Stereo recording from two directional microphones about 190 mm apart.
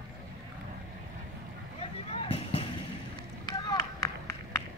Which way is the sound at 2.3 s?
30° left (ahead or behind).